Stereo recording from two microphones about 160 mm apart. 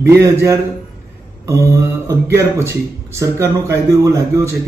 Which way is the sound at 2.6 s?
15° right (ahead or behind).